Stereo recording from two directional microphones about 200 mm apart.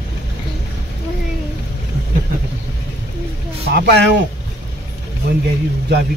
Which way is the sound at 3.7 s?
60° right (ahead or behind).